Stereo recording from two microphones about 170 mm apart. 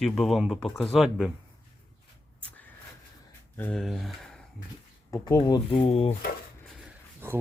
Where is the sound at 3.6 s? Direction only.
10° left (ahead or behind).